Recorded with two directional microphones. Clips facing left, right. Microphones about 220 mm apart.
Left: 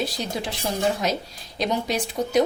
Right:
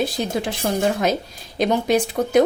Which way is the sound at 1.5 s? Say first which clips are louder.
Right 6 dB; 55° right (ahead or behind).